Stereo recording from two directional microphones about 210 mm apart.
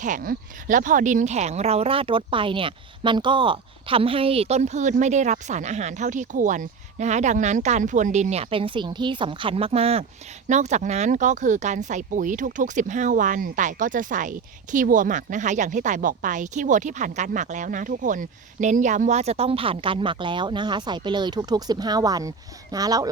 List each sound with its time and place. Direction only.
0.0 s speech: 40° right (ahead or behind); by 23.0 s 15° right (ahead or behind)